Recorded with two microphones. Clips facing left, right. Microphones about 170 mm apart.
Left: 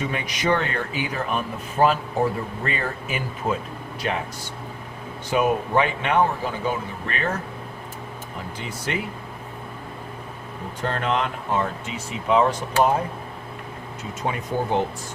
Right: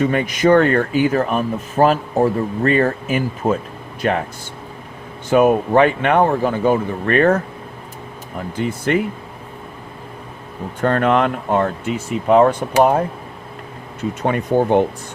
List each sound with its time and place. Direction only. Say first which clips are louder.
0.0 s speech: right 10 dB; 50° right (ahead or behind)
5.3 s speech: right 8 dB; 55° right (ahead or behind)
8.5 s speech: right 12 dB; 50° right (ahead or behind)
10.8 s speech: right 9 dB; 55° right (ahead or behind)
14.1 s speech: right 9 dB; 60° right (ahead or behind)